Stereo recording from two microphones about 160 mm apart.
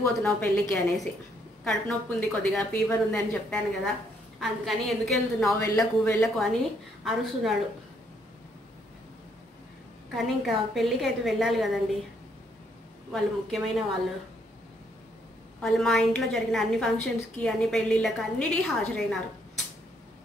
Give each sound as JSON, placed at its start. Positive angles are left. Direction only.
{"t": 0.0, "sound": "a woman's voice", "side_deg": 10}
{"t": 5.6, "sound": "speech", "side_deg": 15}
{"t": 6.2, "sound": "a woman's voice", "side_deg": 0}
{"t": 10.1, "sound": "a woman's voice", "side_deg": 0}
{"t": 13.1, "sound": "a woman's voice", "side_deg": 0}
{"t": 15.6, "sound": "a woman's voice", "side_deg": 0}